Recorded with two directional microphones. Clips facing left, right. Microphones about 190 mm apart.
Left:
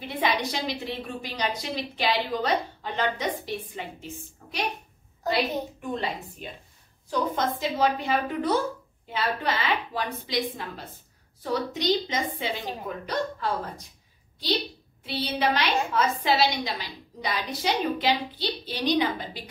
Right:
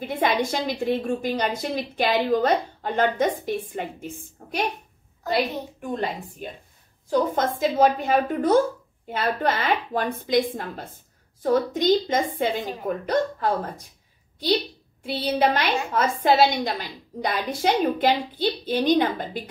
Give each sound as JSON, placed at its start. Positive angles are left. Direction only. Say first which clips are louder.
{"t": 0.0, "sound": "a woman's voice", "louder": "right 4 dB", "side_deg": -50}
{"t": 7.1, "sound": "a woman's voice", "louder": "right 4 dB", "side_deg": -50}
{"t": 15.0, "sound": "a woman's voice", "louder": "right 4 dB", "side_deg": -50}